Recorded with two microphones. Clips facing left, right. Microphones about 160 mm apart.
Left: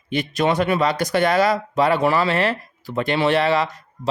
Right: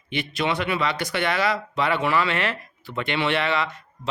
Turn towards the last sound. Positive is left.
turn(degrees=40)  # may be behind; listen again after turning